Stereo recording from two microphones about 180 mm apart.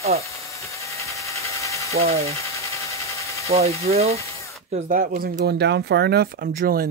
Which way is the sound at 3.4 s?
35° right (ahead or behind).